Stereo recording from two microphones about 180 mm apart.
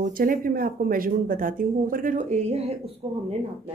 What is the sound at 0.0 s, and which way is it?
Speech, 50° right (ahead or behind).